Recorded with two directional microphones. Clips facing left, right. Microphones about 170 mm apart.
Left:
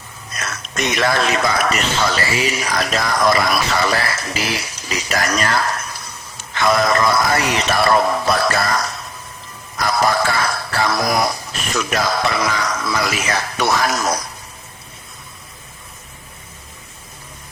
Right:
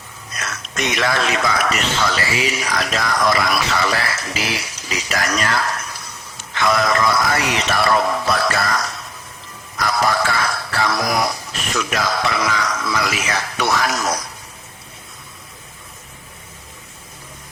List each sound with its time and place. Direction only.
0.3 s speech: 35° left (ahead or behind)